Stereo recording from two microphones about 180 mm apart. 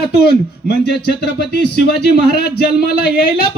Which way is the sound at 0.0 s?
65° left (ahead or behind).